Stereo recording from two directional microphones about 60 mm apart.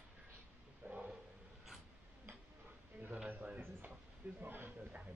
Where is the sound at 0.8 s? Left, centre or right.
Centre.